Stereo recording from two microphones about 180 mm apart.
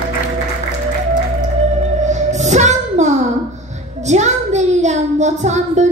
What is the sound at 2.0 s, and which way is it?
Music, 40° right (ahead or behind).